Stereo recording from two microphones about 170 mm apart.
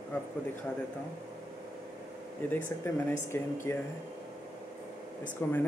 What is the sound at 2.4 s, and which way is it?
Speech, 10° left (ahead or behind).